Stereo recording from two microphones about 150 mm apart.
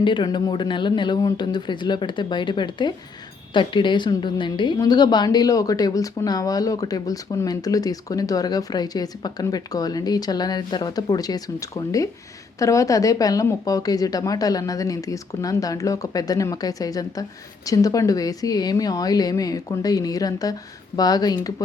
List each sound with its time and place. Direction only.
0.0 s a woman's voice: 30° left (ahead or behind)